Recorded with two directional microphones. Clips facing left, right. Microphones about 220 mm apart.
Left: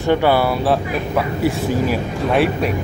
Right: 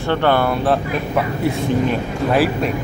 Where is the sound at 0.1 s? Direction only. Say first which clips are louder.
Left 1 dB; 10° left (ahead or behind).